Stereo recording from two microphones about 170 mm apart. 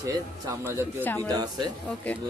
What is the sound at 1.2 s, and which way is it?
Speech, 25° right (ahead or behind).